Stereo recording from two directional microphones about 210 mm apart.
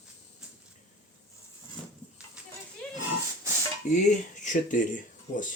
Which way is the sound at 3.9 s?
35° left (ahead or behind).